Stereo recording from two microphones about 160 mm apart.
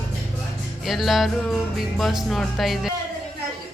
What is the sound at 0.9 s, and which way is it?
A woman's voice, centre (ahead or behind).